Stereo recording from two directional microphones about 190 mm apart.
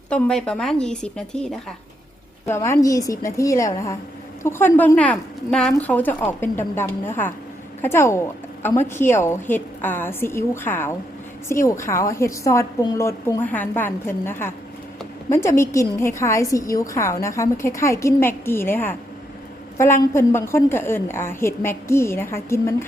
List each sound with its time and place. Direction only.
0.1 s speech: 5° left (ahead or behind)
2.5 s a woman's voice: 15° left (ahead or behind)